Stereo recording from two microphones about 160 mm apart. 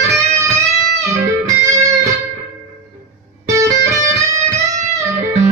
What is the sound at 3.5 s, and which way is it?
Music, 20° right (ahead or behind).